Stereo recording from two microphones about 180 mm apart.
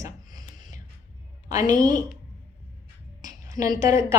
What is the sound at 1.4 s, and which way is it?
Speech, 20° right (ahead or behind).